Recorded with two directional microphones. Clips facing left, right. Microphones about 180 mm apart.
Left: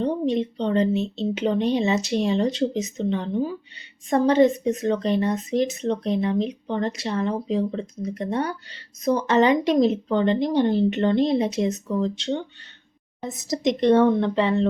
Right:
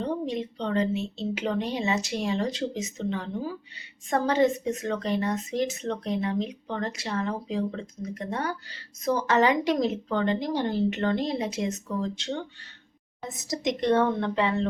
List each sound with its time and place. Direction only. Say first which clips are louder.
0.0 s speech: left 6 dB; 20° left (ahead or behind)
13.7 s speech: left 6 dB; 20° left (ahead or behind)